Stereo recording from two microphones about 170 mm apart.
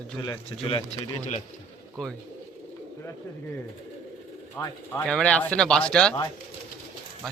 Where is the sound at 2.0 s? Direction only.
5° left (ahead or behind).